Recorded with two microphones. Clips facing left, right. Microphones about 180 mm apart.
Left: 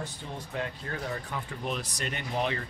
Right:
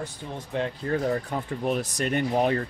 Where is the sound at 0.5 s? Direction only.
35° right (ahead or behind).